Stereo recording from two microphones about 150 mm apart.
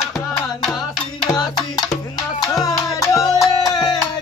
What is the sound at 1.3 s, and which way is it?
Music, 25° left (ahead or behind).